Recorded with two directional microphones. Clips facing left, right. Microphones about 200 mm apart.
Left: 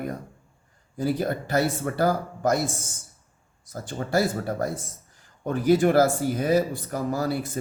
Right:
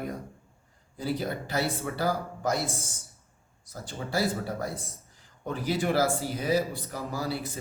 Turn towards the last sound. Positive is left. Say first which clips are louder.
# left 6 dB
turn(degrees=50)  # may be behind; listen again after turning